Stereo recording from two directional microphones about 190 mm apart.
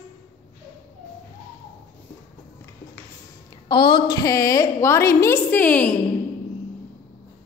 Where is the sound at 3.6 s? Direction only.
25° left (ahead or behind); by 5.9 s 10° left (ahead or behind).